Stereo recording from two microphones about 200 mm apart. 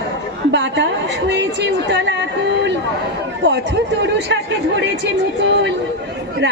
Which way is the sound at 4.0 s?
60° right (ahead or behind).